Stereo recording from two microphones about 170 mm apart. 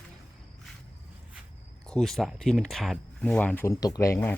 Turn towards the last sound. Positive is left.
turn(degrees=15)  # may be behind; listen again after turning